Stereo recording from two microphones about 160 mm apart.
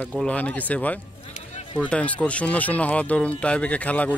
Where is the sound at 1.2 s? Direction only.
45° left (ahead or behind).